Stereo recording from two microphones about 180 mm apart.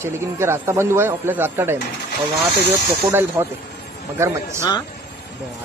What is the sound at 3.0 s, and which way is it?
Speech, 10° right (ahead or behind).